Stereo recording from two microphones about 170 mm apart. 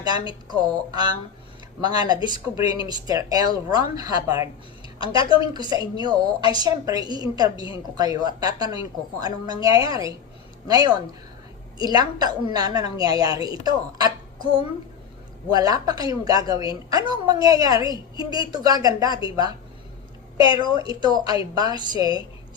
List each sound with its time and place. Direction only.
0.0 s a woman's voice: 25° right (ahead or behind)
4.9 s a woman's voice: 30° left (ahead or behind)
5.3 s a woman's voice: 25° right (ahead or behind)
15.4 s a woman's voice: 20° right (ahead or behind)
20.5 s a woman's voice: 30° left (ahead or behind)
20.7 s a woman's voice: 25° right (ahead or behind)